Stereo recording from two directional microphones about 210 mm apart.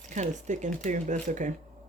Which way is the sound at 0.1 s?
35° right (ahead or behind).